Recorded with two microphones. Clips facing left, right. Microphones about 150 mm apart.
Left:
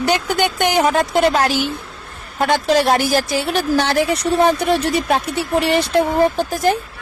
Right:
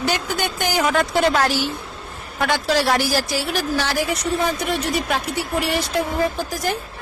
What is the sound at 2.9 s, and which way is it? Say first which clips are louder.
Speech: left 4 dB; 20° left (ahead or behind).